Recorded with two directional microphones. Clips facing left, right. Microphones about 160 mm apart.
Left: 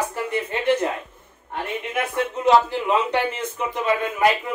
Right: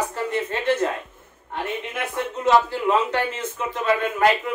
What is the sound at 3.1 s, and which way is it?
Speech, 15° left (ahead or behind).